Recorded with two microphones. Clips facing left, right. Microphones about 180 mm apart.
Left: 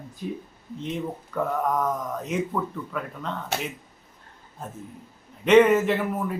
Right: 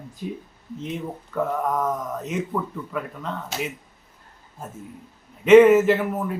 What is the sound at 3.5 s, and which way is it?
Speech, 60° left (ahead or behind).